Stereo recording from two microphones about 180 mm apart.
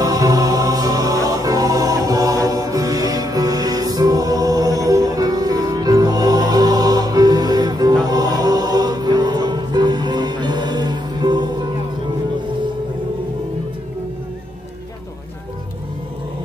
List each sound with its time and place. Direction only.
0.0 s music: 20° right (ahead or behind)